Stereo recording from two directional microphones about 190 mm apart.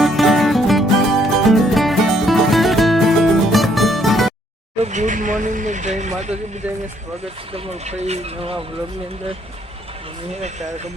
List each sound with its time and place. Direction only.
0.0 s music: centre (ahead or behind)
4.8 s a sound: 40° right (ahead or behind)
7.5 s speech: 35° right (ahead or behind)